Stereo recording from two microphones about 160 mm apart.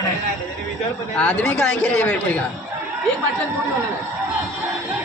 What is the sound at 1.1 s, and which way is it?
A man's voice, 10° left (ahead or behind).